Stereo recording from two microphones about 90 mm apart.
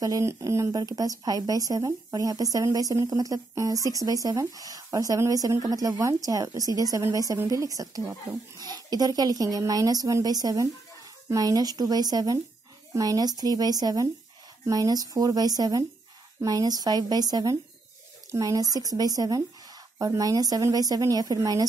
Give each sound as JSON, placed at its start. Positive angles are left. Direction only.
{"t": 0.0, "sound": "a woman's voice", "side_deg": -35}